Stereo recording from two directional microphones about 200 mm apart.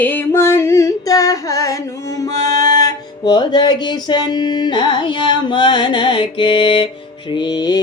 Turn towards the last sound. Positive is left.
turn(degrees=20)  # may be behind; listen again after turning